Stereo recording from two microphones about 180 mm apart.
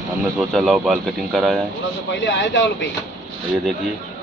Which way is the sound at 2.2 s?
90° left.